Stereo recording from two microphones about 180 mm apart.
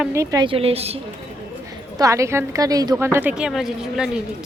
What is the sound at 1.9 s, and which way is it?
A woman's voice, 15° right (ahead or behind).